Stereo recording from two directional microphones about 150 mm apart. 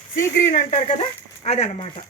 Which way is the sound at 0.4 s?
55° left (ahead or behind).